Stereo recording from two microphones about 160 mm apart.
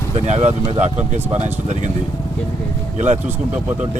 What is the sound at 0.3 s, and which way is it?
Speech, 45° right (ahead or behind).